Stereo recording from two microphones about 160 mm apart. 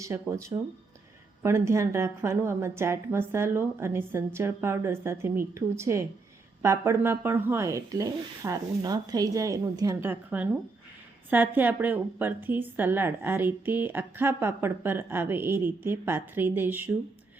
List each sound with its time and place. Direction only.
0.0 s a woman's voice: 20° right (ahead or behind)